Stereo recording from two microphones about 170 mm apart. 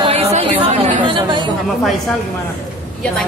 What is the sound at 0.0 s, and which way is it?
Chatter, 35° right (ahead or behind).